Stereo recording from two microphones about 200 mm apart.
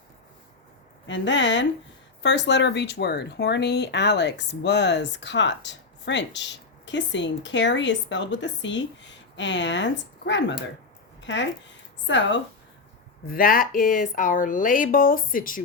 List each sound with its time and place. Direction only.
1.0 s a woman's voice: 65° left (ahead or behind)
13.2 s speech: 45° left (ahead or behind)